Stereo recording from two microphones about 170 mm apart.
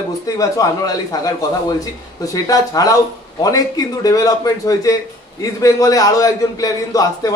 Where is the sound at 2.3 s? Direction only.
20° left (ahead or behind).